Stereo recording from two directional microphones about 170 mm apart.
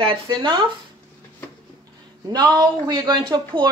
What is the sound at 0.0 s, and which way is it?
Speech, 30° right (ahead or behind).